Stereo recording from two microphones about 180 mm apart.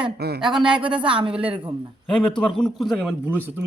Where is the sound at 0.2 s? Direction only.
60° right (ahead or behind).